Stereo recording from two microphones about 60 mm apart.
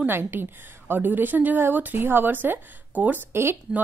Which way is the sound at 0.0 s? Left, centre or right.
Right.